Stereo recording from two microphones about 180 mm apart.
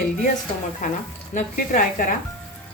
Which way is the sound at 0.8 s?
45° left (ahead or behind).